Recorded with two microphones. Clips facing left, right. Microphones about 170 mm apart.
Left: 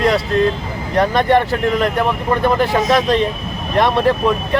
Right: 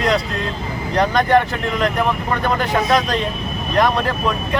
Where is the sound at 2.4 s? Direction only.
5° left (ahead or behind).